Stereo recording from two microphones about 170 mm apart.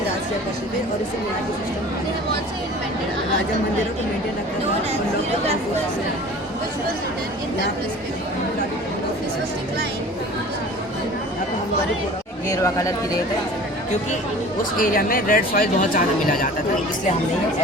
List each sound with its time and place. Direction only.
12.5 s speech: 20° left (ahead or behind)
14.8 s speech: 55° left (ahead or behind)